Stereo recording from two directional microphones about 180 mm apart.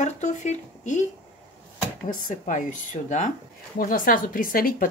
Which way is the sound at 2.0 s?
45° left (ahead or behind).